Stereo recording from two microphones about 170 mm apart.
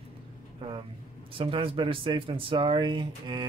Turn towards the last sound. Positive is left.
turn(degrees=-30)  # may be behind; listen again after turning